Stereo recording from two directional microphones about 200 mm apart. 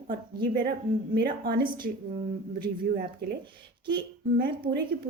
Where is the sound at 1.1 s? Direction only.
50° right (ahead or behind).